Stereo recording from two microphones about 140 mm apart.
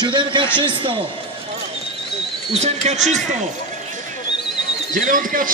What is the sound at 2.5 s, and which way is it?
Speech, 50° right (ahead or behind).